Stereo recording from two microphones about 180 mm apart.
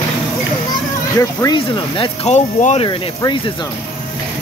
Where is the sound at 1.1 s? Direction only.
20° left (ahead or behind).